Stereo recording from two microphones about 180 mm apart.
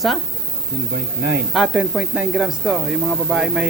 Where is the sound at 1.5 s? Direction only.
5° right (ahead or behind).